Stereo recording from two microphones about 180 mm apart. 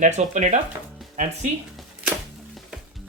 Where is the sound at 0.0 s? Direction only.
40° right (ahead or behind).